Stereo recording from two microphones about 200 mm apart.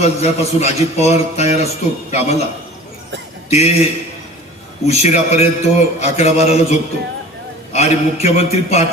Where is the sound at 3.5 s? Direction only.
35° left (ahead or behind).